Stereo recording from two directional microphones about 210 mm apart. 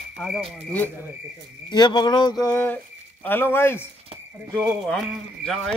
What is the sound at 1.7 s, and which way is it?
Speech, 20° left (ahead or behind).